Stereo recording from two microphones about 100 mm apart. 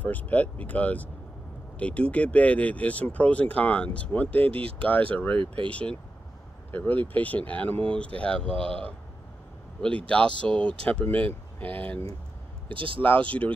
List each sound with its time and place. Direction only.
0.0 s speech: 15° left (ahead or behind)
4.5 s speech: 65° right (ahead or behind)
4.8 s speech: 15° left (ahead or behind)
12.6 s speech: 60° right (ahead or behind)
13.0 s speech: 15° left (ahead or behind)